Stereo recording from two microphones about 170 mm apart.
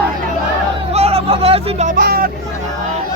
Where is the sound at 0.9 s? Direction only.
35° right (ahead or behind).